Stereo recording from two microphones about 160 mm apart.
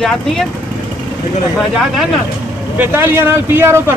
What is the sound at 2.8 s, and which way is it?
A man's voice, 15° right (ahead or behind).